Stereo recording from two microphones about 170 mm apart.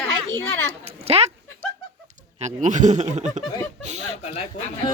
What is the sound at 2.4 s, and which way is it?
Speech, 45° right (ahead or behind).